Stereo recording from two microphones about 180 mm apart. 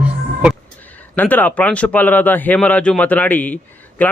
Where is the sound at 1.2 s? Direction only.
10° left (ahead or behind).